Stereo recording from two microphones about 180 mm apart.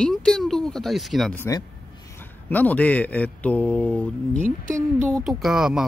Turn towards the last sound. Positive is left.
turn(degrees=-5)  # may be behind; listen again after turning